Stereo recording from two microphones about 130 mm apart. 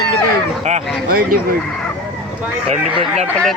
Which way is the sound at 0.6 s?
60° right (ahead or behind).